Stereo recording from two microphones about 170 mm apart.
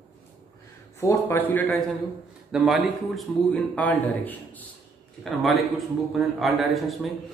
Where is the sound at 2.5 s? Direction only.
Centre (ahead or behind).